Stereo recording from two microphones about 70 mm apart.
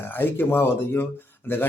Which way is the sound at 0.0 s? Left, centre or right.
Left.